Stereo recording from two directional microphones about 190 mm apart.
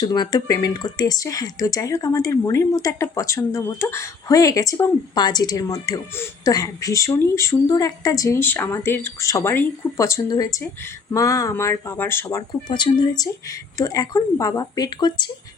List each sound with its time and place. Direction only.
0.0 s speech: 20° left (ahead or behind)